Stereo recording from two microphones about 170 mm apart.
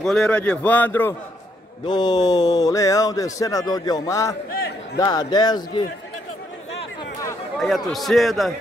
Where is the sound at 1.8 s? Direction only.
25° left (ahead or behind).